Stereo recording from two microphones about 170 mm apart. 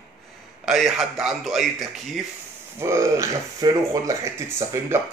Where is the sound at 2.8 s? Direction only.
20° right (ahead or behind).